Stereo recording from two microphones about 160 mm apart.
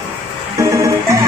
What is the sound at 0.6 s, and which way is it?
Music, 20° right (ahead or behind).